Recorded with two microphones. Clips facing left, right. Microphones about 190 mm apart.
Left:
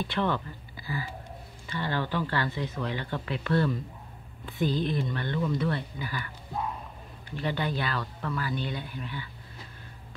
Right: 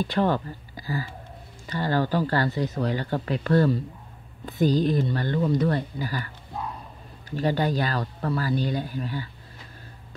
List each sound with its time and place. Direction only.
0.0 s speech: 40° right (ahead or behind)